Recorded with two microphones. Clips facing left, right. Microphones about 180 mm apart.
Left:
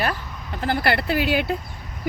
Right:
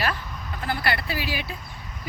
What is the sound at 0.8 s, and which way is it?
Speech, 60° left (ahead or behind).